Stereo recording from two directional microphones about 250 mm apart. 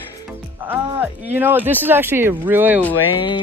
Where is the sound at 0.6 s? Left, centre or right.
Centre.